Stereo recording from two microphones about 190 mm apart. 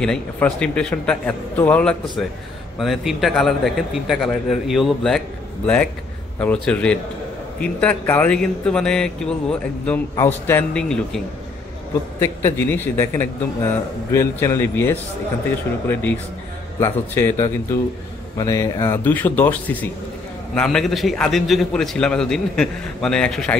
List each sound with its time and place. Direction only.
0.0 s a man's voice: 5° left (ahead or behind)
6.4 s a man's voice: 5° left (ahead or behind)
12.2 s a man's voice: 15° left (ahead or behind)